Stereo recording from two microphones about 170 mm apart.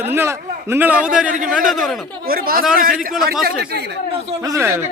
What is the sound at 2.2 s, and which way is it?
A man's voice, 60° right (ahead or behind).